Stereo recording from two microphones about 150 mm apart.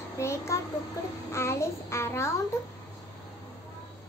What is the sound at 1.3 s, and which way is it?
A child's voice, 20° left (ahead or behind).